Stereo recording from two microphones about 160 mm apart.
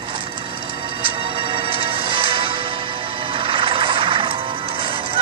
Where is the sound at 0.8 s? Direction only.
30° right (ahead or behind).